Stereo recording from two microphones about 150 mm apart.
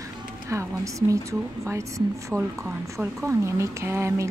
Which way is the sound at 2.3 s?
5° right (ahead or behind).